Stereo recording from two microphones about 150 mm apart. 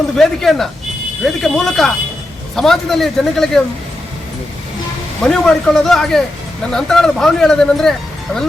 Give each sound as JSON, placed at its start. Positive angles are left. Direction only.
{"t": 0.2, "sound": "speech", "side_deg": 0}
{"t": 5.2, "sound": "speech", "side_deg": 5}